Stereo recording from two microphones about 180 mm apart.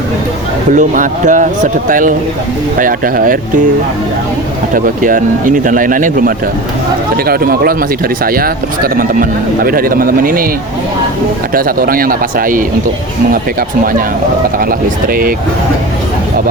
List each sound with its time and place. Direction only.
0.7 s speech: 45° right (ahead or behind)
4.7 s speech: 50° right (ahead or behind)
11.5 s speech: 55° right (ahead or behind)